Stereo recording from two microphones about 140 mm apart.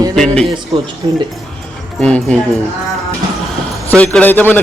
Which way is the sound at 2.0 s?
5° left (ahead or behind).